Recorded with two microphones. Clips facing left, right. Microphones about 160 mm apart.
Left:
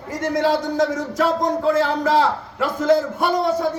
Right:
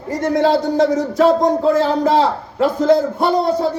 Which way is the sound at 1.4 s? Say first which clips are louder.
Right 4 dB; 30° right (ahead or behind).